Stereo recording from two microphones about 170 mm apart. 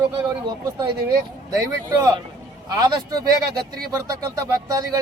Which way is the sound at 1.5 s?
20° right (ahead or behind).